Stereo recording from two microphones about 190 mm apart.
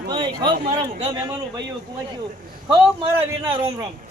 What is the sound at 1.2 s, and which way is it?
Speech, 20° right (ahead or behind).